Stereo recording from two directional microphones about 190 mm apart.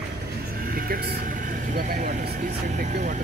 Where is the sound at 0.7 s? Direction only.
50° right (ahead or behind).